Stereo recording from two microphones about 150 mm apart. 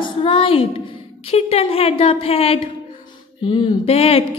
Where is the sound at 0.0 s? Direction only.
35° left (ahead or behind).